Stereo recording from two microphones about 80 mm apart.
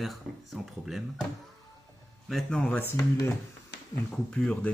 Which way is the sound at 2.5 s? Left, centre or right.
Centre.